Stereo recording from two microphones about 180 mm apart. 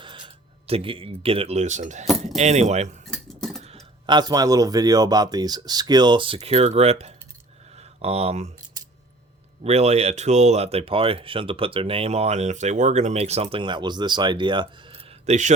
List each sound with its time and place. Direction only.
0.7 s speech: 30° right (ahead or behind)
3.1 s cutlery: centre (ahead or behind)
3.6 s speech: 35° right (ahead or behind)
9.6 s speech: 35° right (ahead or behind)